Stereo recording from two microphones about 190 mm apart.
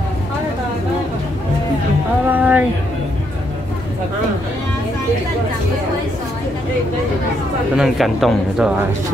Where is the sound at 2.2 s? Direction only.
10° right (ahead or behind).